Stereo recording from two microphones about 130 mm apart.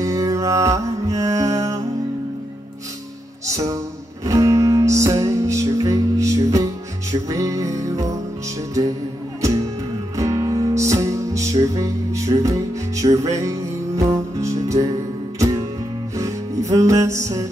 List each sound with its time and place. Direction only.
0.0 s music: 25° right (ahead or behind)
3.4 s music: 25° right (ahead or behind)
10.1 s music: 25° right (ahead or behind)